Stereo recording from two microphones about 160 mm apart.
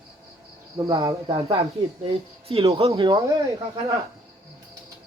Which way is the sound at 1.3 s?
35° right (ahead or behind).